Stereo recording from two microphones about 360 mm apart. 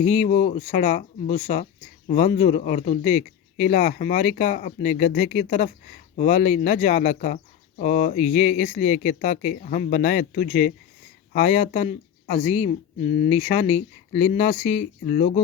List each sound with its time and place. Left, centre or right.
0.0 s speech: centre